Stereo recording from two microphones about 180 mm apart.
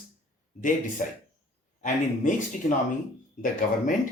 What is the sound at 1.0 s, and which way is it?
Speech, 45° left (ahead or behind).